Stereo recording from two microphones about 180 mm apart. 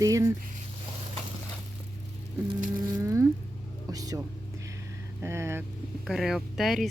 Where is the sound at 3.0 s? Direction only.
15° right (ahead or behind).